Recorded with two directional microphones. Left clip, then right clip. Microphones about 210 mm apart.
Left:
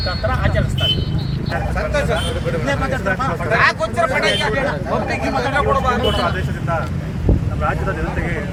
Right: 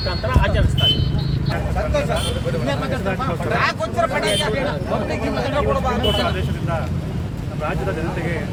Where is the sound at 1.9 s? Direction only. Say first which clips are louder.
Left 1 dB; 40° left (ahead or behind).